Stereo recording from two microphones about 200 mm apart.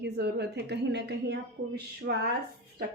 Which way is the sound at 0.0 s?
55° right (ahead or behind).